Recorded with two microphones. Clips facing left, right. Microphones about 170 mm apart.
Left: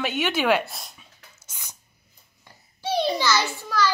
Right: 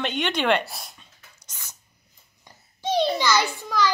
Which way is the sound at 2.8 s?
10° left (ahead or behind).